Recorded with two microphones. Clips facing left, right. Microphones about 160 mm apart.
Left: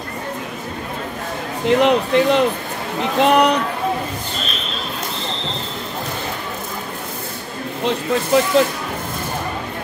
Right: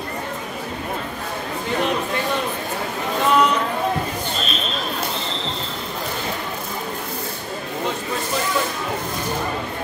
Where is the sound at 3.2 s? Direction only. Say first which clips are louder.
Left 4 dB; 70° left (ahead or behind).